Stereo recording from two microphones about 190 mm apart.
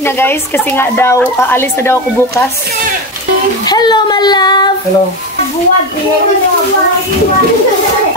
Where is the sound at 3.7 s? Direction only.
20° left (ahead or behind).